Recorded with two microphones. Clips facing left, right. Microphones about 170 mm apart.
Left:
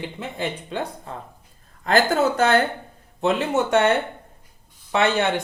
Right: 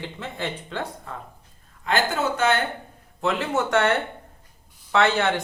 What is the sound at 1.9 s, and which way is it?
Speech, 40° left (ahead or behind).